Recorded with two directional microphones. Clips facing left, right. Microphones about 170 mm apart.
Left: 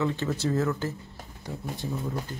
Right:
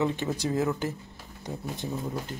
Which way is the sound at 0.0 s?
15° right (ahead or behind).